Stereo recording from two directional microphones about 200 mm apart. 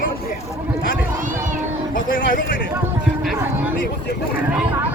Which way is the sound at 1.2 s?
40° right (ahead or behind).